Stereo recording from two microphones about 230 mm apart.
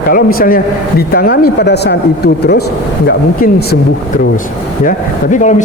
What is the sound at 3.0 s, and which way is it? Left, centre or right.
Speech, left.